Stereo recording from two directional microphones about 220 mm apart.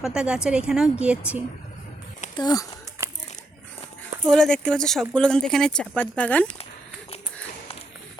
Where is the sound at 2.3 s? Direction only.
15° left (ahead or behind).